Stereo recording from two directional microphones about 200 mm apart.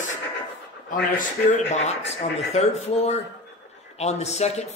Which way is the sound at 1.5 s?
35° left (ahead or behind).